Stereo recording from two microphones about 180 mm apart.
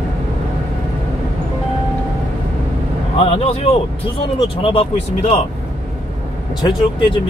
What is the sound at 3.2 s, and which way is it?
A man's voice, 35° left (ahead or behind).